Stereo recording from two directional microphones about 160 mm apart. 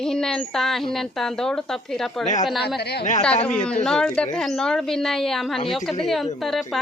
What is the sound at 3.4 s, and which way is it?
A woman's voice, 5° left (ahead or behind).